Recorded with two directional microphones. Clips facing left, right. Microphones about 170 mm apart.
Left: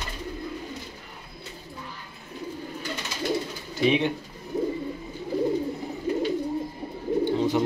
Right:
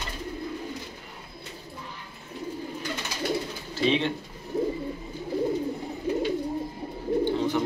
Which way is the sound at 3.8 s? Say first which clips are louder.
Left 2 dB; 10° left (ahead or behind).